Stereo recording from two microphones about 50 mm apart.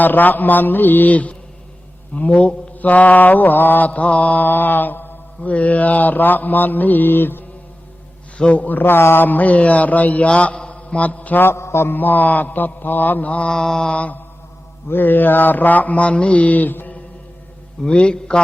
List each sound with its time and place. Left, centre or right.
0.0 s mantra: left
5.4 s mantra: left
8.4 s a man's voice: left
11.3 s mantra: left
11.9 s mantra: left
13.5 s a man's voice: centre
13.9 s a man's voice: left
14.8 s mantra: left
17.8 s a man's voice: centre